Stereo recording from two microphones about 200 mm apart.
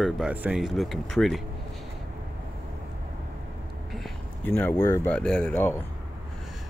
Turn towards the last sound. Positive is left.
turn(degrees=10)  # may be behind; listen again after turning